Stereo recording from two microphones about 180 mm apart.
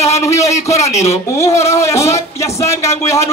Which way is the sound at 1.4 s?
15° left (ahead or behind).